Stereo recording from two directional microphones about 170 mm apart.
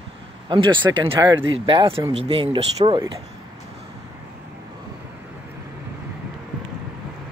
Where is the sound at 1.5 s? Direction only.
30° right (ahead or behind).